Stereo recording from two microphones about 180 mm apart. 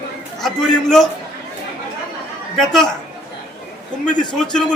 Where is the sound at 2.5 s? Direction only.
Centre (ahead or behind).